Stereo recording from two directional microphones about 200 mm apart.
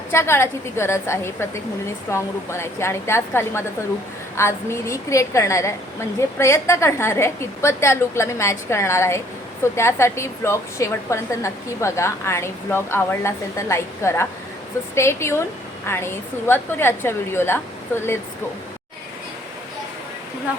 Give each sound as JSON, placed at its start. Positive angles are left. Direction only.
{"t": 0.1, "sound": "a woman's voice", "side_deg": 15}